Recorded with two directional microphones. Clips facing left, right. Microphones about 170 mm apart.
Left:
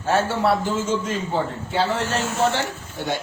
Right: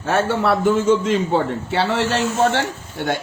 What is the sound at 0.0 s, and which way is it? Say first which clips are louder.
A man's voice: right 2 dB; 60° right (ahead or behind).